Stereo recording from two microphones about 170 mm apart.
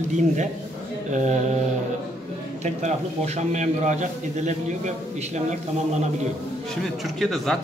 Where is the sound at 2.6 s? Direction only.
40° right (ahead or behind).